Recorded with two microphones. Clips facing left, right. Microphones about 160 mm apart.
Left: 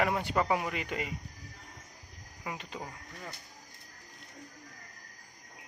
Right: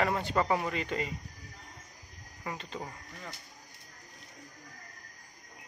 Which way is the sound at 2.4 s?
15° left (ahead or behind).